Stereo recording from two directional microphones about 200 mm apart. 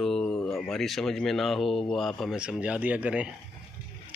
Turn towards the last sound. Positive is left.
turn(degrees=-5)  # may be behind; listen again after turning